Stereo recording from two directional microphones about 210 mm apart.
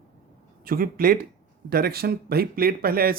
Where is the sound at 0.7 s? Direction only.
45° right (ahead or behind).